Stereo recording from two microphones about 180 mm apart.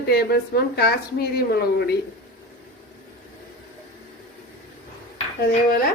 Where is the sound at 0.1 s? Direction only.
60° left (ahead or behind).